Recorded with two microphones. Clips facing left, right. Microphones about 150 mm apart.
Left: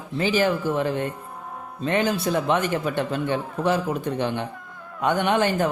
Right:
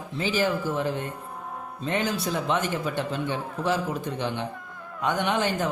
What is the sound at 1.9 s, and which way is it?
A man's voice, 60° left (ahead or behind).